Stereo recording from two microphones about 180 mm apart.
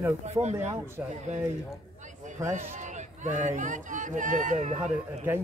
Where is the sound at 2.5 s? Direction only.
45° right (ahead or behind).